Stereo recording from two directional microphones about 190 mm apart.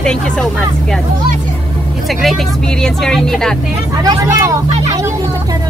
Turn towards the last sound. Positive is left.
turn(degrees=-15)  # may be behind; listen again after turning